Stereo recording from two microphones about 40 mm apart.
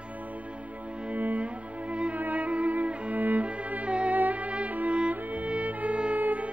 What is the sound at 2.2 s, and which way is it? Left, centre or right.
Music, right.